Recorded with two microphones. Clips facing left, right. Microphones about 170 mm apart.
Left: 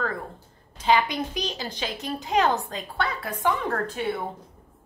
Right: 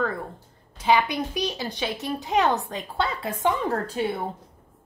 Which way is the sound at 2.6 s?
20° right (ahead or behind).